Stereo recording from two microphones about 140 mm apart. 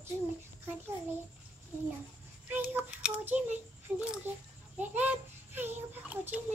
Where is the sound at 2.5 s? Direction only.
10° right (ahead or behind).